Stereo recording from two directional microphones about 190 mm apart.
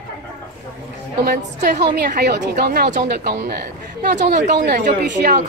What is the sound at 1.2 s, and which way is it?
A woman's voice, 55° right (ahead or behind).